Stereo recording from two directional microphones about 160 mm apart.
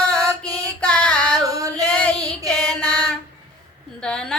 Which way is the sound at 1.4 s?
20° right (ahead or behind).